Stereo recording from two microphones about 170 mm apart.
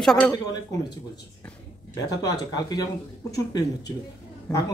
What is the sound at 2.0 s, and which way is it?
Speech, 20° left (ahead or behind).